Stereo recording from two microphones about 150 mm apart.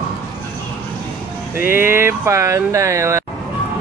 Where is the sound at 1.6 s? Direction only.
15° right (ahead or behind).